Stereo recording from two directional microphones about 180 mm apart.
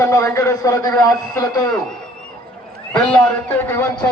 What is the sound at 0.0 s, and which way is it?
A man's voice, 15° left (ahead or behind).